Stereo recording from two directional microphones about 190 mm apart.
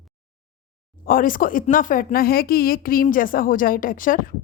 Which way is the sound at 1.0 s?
45° left (ahead or behind).